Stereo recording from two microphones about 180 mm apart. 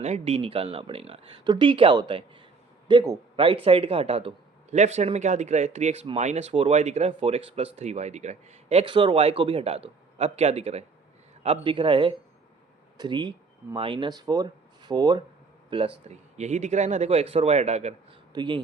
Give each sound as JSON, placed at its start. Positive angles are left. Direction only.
{"t": 0.0, "sound": "a man's voice", "side_deg": -35}
{"t": 18.3, "sound": "a man's voice", "side_deg": -25}